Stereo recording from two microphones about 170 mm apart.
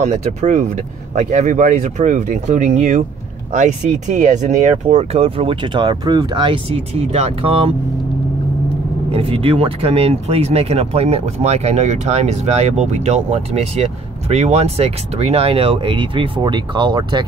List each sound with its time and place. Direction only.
0.0 s speech: 40° right (ahead or behind)
9.1 s speech: 35° right (ahead or behind)